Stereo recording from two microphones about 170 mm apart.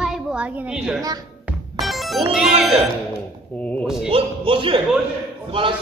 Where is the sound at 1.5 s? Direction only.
Centre (ahead or behind).